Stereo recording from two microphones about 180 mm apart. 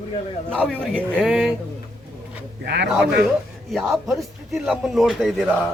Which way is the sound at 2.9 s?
5° right (ahead or behind).